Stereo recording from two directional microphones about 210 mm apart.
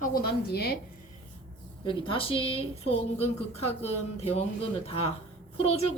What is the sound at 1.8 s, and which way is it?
A woman's voice, 25° left (ahead or behind).